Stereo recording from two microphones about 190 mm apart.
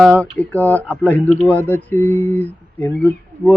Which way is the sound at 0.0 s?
10° left (ahead or behind).